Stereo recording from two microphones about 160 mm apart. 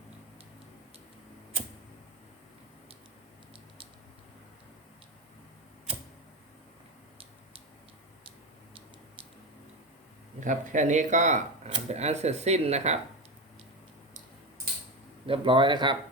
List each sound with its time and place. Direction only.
10.4 s speech: 50° right (ahead or behind)
15.3 s speech: 30° right (ahead or behind)